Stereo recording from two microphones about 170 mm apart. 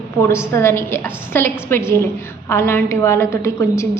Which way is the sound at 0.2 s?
15° left (ahead or behind).